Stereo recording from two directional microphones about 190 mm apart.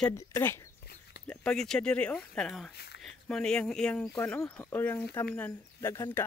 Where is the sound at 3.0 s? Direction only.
5° left (ahead or behind).